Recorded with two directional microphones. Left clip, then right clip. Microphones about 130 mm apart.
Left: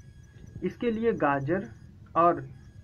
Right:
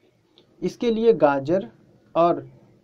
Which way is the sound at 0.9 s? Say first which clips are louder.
Right 9 dB; 40° right (ahead or behind).